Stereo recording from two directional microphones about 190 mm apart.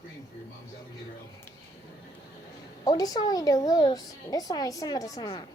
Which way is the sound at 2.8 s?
20° left (ahead or behind).